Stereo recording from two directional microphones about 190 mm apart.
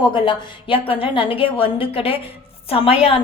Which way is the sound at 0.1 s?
25° left (ahead or behind).